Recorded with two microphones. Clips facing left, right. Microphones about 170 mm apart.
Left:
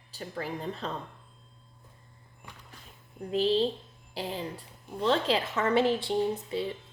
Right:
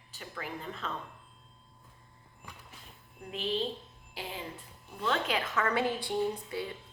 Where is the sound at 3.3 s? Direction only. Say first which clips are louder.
Left 8 dB; 35° left (ahead or behind).